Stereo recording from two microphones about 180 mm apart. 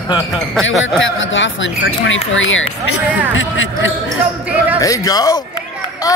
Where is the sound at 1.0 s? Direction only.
90° left.